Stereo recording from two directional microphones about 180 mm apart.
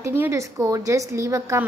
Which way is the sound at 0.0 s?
15° right (ahead or behind).